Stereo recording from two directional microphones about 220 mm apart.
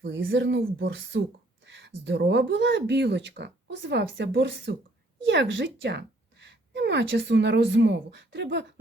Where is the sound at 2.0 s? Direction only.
50° right (ahead or behind).